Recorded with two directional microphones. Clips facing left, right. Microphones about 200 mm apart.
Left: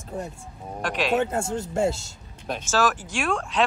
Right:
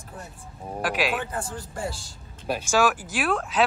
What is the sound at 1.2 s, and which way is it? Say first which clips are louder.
Speech: left 7 dB; 25° left (ahead or behind).